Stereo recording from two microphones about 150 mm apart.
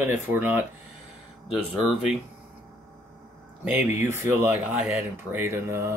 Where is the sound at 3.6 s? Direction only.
15° right (ahead or behind).